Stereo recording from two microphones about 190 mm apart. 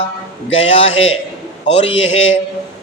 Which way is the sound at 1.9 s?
85° left.